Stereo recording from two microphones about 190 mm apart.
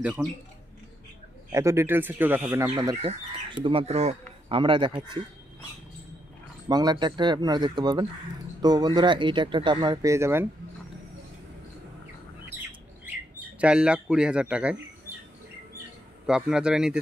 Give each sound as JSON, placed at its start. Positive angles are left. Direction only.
{"t": 0.0, "sound": "speech", "side_deg": -5}
{"t": 1.5, "sound": "speech", "side_deg": -15}
{"t": 2.7, "sound": "speech", "side_deg": -20}
{"t": 6.7, "sound": "speech", "side_deg": -20}
{"t": 13.6, "sound": "speech", "side_deg": -5}
{"t": 16.3, "sound": "speech", "side_deg": -5}